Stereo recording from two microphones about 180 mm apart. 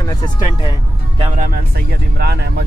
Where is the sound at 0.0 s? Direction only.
20° left (ahead or behind).